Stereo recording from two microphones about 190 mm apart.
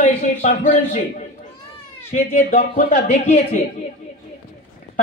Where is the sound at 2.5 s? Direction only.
40° left (ahead or behind).